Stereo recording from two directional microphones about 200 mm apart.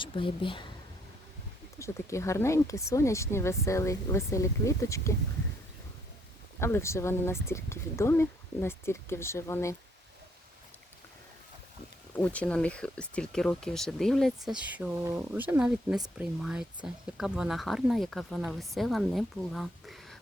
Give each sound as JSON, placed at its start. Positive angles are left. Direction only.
{"t": 0.0, "sound": "speech", "side_deg": 25}
{"t": 1.8, "sound": "speech", "side_deg": 15}
{"t": 6.6, "sound": "speech", "side_deg": 10}
{"t": 12.1, "sound": "speech", "side_deg": 5}